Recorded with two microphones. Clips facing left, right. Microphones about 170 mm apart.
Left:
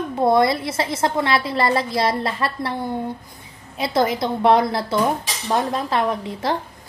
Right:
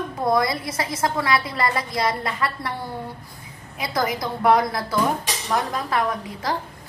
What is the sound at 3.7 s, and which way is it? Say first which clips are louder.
A woman's voice: left 5 dB; 25° left (ahead or behind).